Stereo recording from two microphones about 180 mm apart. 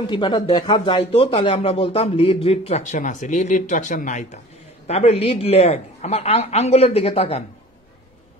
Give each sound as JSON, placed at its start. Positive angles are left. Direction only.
{"t": 0.0, "sound": "speech", "side_deg": 25}